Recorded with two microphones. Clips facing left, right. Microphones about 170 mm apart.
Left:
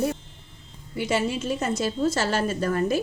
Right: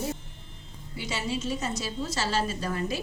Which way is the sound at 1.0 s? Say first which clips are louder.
Left 7 dB; 55° left (ahead or behind).